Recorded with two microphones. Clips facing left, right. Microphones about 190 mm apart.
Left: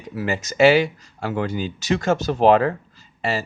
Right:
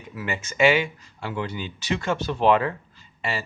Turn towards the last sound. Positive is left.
turn(degrees=40)  # may be behind; listen again after turning